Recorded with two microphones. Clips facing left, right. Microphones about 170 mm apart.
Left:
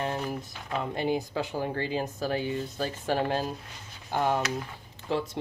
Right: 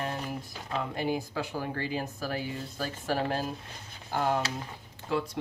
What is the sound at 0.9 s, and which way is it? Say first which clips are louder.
Speech: left 4 dB; 25° left (ahead or behind).